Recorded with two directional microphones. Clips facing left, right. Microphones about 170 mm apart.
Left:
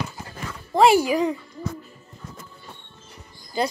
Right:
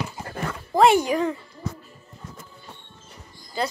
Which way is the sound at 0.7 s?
5° left (ahead or behind).